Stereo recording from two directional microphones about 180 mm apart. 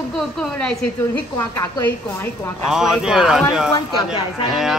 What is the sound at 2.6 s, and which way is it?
A woman's voice, centre (ahead or behind).